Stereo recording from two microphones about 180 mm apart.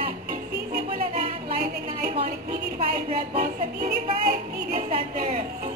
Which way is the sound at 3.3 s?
45° right (ahead or behind).